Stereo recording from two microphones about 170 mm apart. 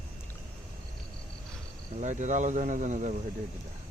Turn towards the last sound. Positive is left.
turn(degrees=-45)  # may be behind; listen again after turning